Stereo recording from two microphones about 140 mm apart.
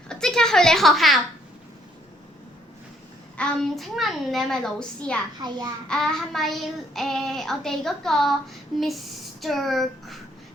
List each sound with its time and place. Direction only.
0.1 s a woman's voice: 5° left (ahead or behind)
3.3 s child singing: 5° left (ahead or behind)
5.4 s a child's voice: 30° right (ahead or behind)
5.9 s child singing: 5° left (ahead or behind)